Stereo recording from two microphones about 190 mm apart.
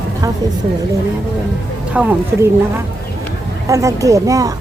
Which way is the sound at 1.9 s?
10° right (ahead or behind).